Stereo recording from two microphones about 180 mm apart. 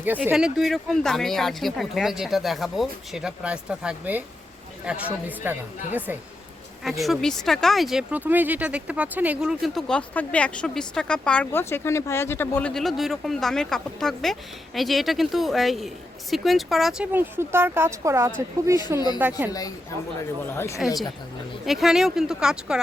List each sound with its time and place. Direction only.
0.0 s speech: 10° right (ahead or behind)
6.8 s speech: centre (ahead or behind); by 18.9 s 15° right (ahead or behind)
18.9 s speech: 20° left (ahead or behind)
21.7 s speech: centre (ahead or behind)